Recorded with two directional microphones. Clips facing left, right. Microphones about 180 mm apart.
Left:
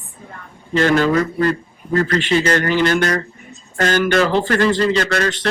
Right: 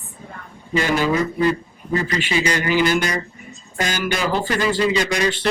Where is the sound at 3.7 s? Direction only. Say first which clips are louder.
Left 7 dB; 60° left (ahead or behind).